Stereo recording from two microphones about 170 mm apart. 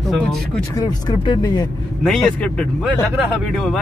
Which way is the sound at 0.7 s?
25° left (ahead or behind).